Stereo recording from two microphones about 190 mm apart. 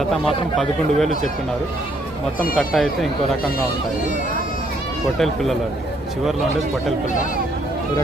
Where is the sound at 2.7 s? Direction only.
Centre (ahead or behind).